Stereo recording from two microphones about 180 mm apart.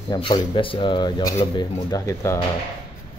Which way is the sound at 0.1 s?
25° left (ahead or behind).